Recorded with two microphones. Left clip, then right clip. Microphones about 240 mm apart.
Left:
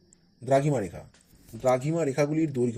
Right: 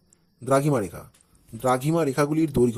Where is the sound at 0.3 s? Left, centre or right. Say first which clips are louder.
Right 2 dB; centre.